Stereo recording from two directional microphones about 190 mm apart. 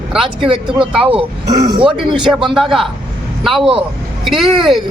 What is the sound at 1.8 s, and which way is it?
Speech, 5° right (ahead or behind).